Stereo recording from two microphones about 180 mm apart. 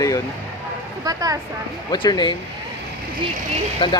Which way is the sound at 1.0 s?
20° right (ahead or behind).